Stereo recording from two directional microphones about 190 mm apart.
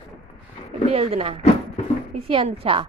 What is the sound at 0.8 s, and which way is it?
A woman's voice, 30° right (ahead or behind).